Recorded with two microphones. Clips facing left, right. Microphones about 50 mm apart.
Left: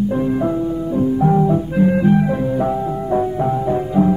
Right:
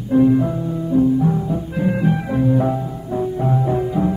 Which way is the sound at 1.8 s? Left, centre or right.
Centre.